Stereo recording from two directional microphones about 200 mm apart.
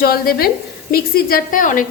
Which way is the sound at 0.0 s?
50° left (ahead or behind).